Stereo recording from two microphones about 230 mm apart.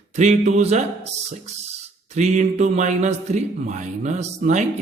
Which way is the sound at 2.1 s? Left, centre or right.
Right.